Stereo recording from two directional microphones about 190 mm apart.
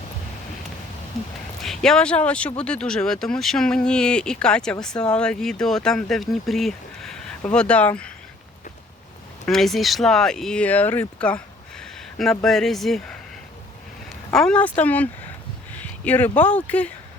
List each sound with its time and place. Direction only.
1.6 s speech: centre (ahead or behind)
9.5 s speech: centre (ahead or behind)
14.3 s speech: 5° left (ahead or behind)
15.8 s a sound: 10° left (ahead or behind)
16.4 s speech: 10° left (ahead or behind)